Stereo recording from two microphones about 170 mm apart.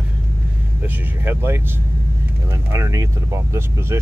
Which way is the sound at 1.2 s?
15° right (ahead or behind).